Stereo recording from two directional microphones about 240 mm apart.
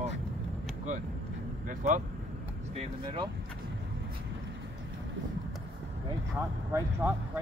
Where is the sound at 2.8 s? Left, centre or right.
Centre.